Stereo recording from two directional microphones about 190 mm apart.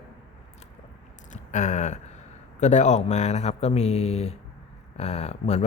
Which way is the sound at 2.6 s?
40° left (ahead or behind).